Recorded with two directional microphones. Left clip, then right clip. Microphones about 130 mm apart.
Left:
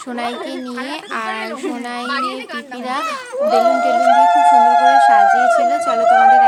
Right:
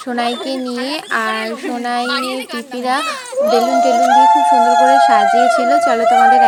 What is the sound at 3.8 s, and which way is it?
Speech, 30° right (ahead or behind).